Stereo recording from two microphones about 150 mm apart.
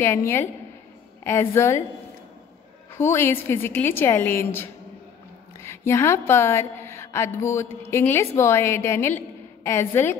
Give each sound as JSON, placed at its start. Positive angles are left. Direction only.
{"t": 0.0, "sound": "a woman's voice", "side_deg": 15}
{"t": 2.9, "sound": "a woman's voice", "side_deg": 15}